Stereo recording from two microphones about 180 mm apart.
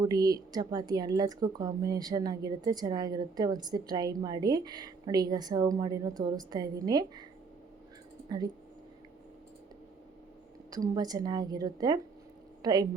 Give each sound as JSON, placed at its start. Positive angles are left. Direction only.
{"t": 0.0, "sound": "a woman's voice", "side_deg": -20}
{"t": 10.7, "sound": "a woman's voice", "side_deg": -20}